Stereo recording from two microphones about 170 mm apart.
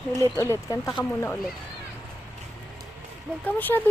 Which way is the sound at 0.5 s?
20° left (ahead or behind).